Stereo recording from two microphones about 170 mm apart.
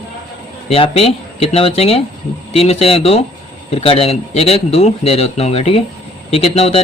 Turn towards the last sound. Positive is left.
turn(degrees=35)  # may be behind; listen again after turning